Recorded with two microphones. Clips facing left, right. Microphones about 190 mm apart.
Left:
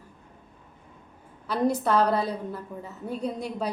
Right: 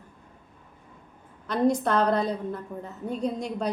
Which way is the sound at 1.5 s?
5° left (ahead or behind).